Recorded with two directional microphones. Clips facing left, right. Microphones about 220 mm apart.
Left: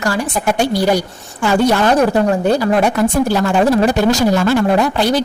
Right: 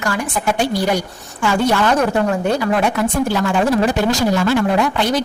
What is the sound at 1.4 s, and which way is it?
Speech, 40° left (ahead or behind).